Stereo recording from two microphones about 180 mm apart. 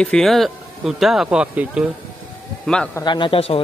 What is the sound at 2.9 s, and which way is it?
Speech, 25° left (ahead or behind).